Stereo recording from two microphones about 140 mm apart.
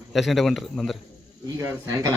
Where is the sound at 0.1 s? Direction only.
Centre (ahead or behind).